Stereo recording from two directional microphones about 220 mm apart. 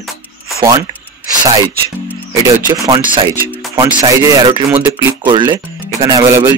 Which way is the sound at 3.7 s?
20° right (ahead or behind).